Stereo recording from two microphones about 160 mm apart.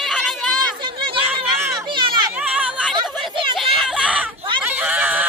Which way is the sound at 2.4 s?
5° right (ahead or behind).